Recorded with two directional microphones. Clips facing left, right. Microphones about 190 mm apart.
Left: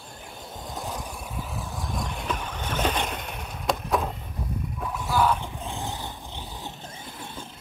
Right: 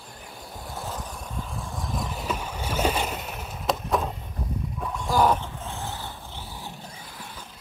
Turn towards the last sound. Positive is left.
turn(degrees=25)  # may be behind; listen again after turning